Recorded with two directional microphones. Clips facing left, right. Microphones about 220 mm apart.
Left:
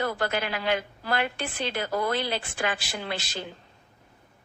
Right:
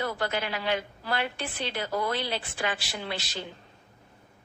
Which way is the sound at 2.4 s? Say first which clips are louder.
Left 2 dB; 50° left (ahead or behind).